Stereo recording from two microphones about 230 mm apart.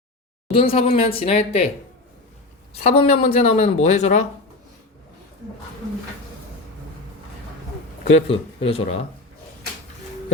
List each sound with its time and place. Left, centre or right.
0.5 s speech: left
2.8 s speech: left
8.0 s speech: left